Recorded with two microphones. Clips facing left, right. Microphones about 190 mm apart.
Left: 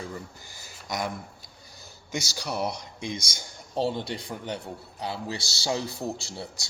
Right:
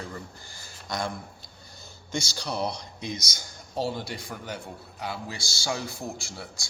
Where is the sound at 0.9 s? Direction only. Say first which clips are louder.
Even; 15° left (ahead or behind).